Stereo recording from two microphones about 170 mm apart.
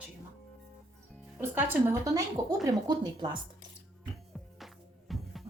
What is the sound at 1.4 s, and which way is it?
A woman's voice, 15° right (ahead or behind).